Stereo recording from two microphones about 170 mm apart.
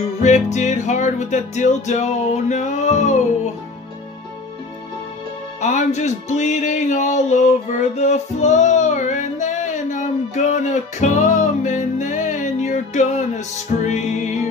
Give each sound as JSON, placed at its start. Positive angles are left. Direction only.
{"t": 0.2, "sound": "music", "side_deg": 45}
{"t": 5.6, "sound": "music", "side_deg": 45}